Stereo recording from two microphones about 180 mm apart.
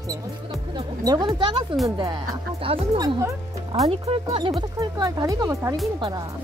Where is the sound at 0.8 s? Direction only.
25° right (ahead or behind).